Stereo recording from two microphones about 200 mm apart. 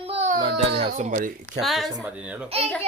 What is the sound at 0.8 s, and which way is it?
Speech, 35° right (ahead or behind).